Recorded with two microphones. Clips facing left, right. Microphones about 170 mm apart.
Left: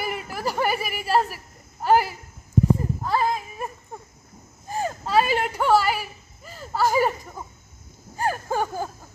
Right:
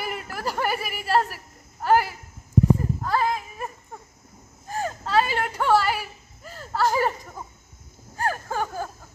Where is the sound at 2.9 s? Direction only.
20° left (ahead or behind).